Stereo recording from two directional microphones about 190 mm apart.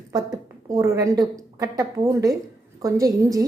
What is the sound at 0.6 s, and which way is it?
Speech, 15° right (ahead or behind).